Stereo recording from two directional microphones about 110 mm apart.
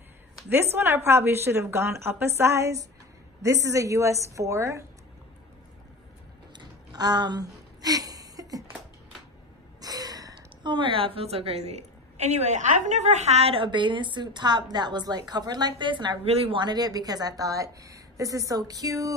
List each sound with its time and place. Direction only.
0.7 s a woman's voice: 20° right (ahead or behind)
6.6 s a sound: 40° right (ahead or behind)
9.8 s a woman's voice: 35° right (ahead or behind)
16.3 s speech: 65° right (ahead or behind)
16.5 s speech: 40° right (ahead or behind)